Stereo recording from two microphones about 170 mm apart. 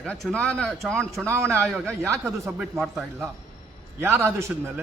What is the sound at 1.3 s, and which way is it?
Speech, 15° right (ahead or behind).